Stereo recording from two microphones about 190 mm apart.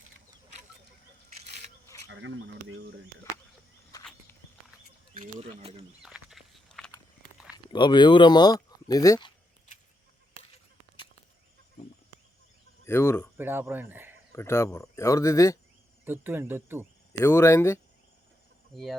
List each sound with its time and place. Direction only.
2.0 s speech: 85° right
3.9 s a sound: 20° left (ahead or behind)
5.4 s speech: 30° right (ahead or behind)
6.0 s a sound: 5° right (ahead or behind)
7.5 s speech: 25° left (ahead or behind)
12.8 s speech: 15° left (ahead or behind)
13.4 s speech: 10° right (ahead or behind)
14.3 s speech: 15° left (ahead or behind)
16.0 s speech: 10° right (ahead or behind)
17.2 s speech: 15° left (ahead or behind)
18.7 s speech: centre (ahead or behind)